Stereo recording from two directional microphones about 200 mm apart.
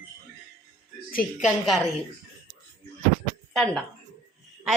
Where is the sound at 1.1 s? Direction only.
45° left (ahead or behind).